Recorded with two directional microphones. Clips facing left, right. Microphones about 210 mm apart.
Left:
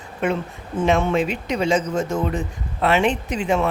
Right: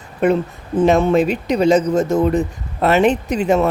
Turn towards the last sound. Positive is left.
turn(degrees=-40)  # may be behind; listen again after turning